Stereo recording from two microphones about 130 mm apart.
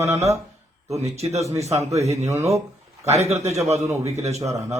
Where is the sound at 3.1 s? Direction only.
55° right (ahead or behind).